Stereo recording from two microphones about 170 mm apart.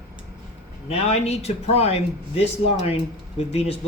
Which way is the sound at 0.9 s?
40° left (ahead or behind).